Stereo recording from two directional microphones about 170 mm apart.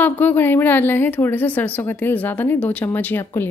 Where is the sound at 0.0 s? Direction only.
10° left (ahead or behind).